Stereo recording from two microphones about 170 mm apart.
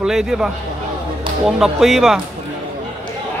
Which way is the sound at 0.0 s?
5° right (ahead or behind).